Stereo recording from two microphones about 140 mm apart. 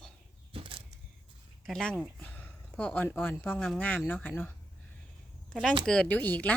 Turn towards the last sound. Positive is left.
turn(degrees=10)  # may be behind; listen again after turning